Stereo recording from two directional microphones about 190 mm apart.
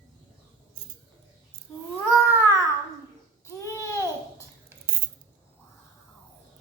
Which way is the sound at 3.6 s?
15° left (ahead or behind).